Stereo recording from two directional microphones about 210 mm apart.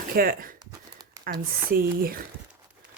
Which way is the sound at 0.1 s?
45° right (ahead or behind).